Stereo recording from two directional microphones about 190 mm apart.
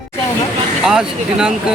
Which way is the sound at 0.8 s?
5° right (ahead or behind).